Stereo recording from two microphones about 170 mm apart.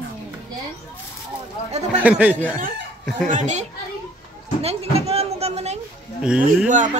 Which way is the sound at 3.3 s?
45° right (ahead or behind).